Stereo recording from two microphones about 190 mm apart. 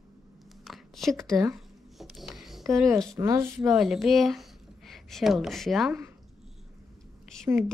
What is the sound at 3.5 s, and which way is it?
Speech, centre (ahead or behind).